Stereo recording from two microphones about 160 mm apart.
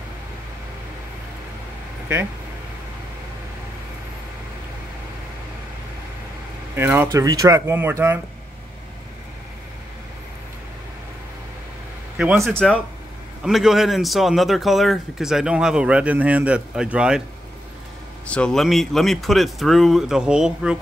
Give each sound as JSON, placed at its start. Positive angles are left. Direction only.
{"t": 6.7, "sound": "speech", "side_deg": -15}
{"t": 12.4, "sound": "a man's voice", "side_deg": 5}
{"t": 18.2, "sound": "a man's voice", "side_deg": 5}